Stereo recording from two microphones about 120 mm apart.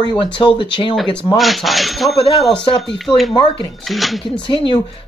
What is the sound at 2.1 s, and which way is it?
Speech, 50° left (ahead or behind).